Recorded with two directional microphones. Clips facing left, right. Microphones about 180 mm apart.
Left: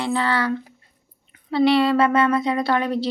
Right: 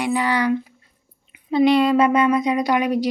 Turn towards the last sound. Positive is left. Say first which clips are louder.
# right 2 dB
turn(degrees=-15)  # may be behind; listen again after turning